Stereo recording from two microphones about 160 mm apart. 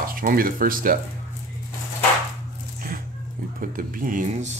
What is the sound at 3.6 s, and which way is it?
Speech, 60° right (ahead or behind).